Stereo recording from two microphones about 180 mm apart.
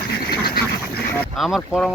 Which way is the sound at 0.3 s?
55° left (ahead or behind).